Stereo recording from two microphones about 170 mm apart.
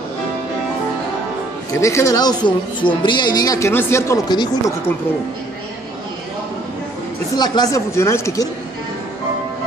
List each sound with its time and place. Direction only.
1.8 s speech: 15° left (ahead or behind)
7.3 s speech: 25° left (ahead or behind)